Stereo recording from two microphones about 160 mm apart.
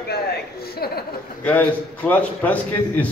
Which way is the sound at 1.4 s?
10° left (ahead or behind).